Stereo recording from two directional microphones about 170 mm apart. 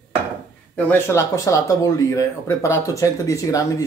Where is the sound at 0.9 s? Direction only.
15° left (ahead or behind).